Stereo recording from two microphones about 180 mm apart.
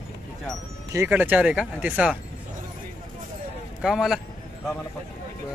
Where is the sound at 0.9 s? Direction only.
15° right (ahead or behind).